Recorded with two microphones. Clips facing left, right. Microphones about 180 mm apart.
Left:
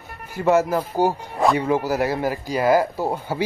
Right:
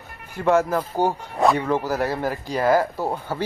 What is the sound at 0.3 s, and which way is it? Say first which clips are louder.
Speech: left 1 dB; 5° left (ahead or behind).